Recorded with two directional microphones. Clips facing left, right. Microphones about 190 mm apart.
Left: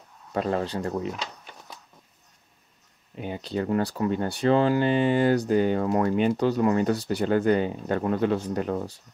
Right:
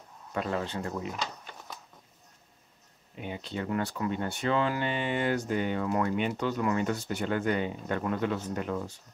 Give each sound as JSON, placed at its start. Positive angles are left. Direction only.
{"t": 0.3, "sound": "speech", "side_deg": 35}
{"t": 3.2, "sound": "speech", "side_deg": 40}